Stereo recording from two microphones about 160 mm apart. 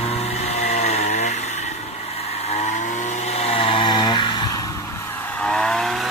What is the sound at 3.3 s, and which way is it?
Chainsaw, 35° left (ahead or behind).